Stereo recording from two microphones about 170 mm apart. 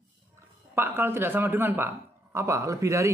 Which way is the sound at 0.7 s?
15° right (ahead or behind).